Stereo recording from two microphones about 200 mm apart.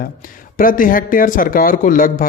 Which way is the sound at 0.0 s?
45° left (ahead or behind).